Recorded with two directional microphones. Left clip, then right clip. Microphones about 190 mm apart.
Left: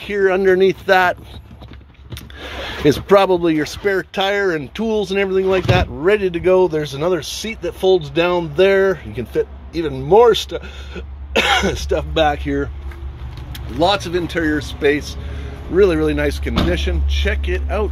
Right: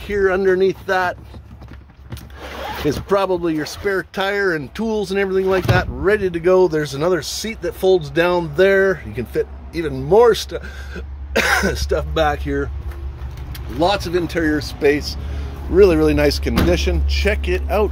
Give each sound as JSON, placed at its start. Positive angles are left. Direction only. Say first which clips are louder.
{"t": 0.0, "sound": "speech", "louder": "left 1 dB", "side_deg": 10}
{"t": 2.6, "sound": "speech", "louder": "left 5 dB", "side_deg": 20}
{"t": 13.7, "sound": "speech", "louder": "left 1 dB", "side_deg": 15}